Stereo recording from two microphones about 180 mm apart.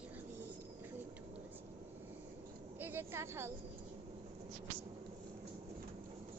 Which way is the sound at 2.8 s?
10° right (ahead or behind).